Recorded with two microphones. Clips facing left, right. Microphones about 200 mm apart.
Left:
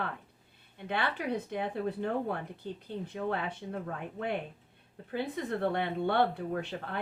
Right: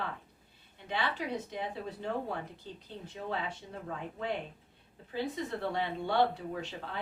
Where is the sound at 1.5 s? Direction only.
55° left (ahead or behind).